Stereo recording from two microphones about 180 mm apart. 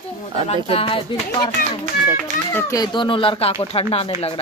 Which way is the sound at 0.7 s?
30° left (ahead or behind).